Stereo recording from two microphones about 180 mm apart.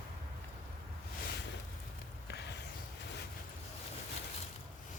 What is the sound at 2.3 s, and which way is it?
Sniff, 70° left (ahead or behind).